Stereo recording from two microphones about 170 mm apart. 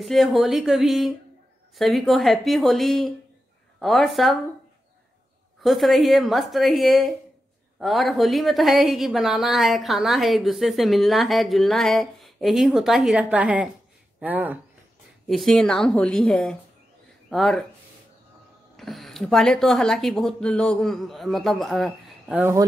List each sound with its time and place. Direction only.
0.0 s a woman's voice: centre (ahead or behind)
5.6 s a woman's voice: centre (ahead or behind)
15.2 s a woman's voice: centre (ahead or behind)
18.8 s a woman's voice: centre (ahead or behind)
22.4 s speech: 15° right (ahead or behind)